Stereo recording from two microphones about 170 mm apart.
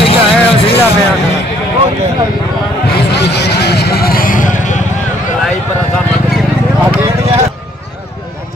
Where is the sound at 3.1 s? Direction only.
80° left; by 4.4 s 55° left (ahead or behind).